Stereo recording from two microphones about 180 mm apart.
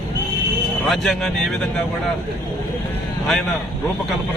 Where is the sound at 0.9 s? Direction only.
Centre (ahead or behind).